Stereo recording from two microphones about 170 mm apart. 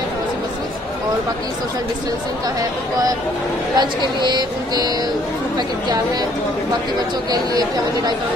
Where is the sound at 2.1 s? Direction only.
20° right (ahead or behind).